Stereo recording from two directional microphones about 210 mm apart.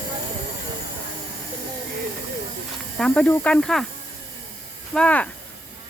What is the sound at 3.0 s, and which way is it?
Speech, 5° left (ahead or behind).